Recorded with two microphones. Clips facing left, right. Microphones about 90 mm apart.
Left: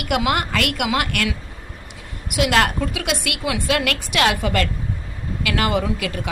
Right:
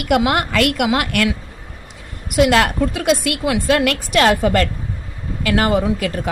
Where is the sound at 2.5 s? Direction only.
40° right (ahead or behind).